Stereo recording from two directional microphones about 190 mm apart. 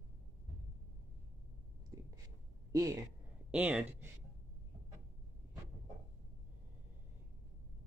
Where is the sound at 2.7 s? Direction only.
15° right (ahead or behind).